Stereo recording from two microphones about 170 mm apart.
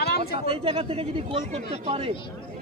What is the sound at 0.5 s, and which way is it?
A man's voice, 30° right (ahead or behind).